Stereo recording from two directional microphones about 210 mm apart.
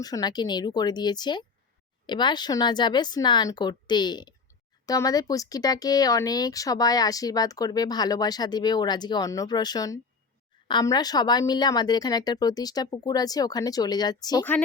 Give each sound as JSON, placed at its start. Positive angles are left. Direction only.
{"t": 0.0, "sound": "a woman's voice", "side_deg": 20}